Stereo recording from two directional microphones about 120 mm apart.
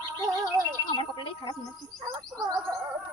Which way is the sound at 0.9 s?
40° left (ahead or behind).